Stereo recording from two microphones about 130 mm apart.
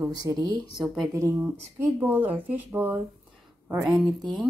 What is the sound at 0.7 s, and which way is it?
Speech, centre (ahead or behind).